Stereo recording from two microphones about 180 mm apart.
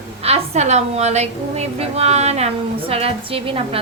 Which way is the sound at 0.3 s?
35° right (ahead or behind).